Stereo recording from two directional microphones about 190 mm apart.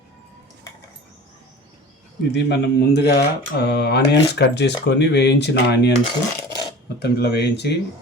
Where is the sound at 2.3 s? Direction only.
65° left (ahead or behind).